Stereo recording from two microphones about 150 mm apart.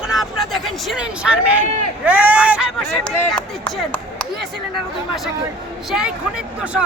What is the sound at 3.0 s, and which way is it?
Speech, 5° left (ahead or behind).